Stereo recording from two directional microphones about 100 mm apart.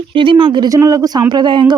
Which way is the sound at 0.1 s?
55° right (ahead or behind).